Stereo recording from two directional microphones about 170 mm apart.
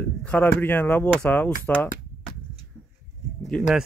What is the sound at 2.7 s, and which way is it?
Bird, 5° left (ahead or behind).